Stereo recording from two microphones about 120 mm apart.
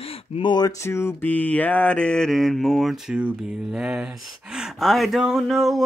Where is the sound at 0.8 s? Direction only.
20° left (ahead or behind).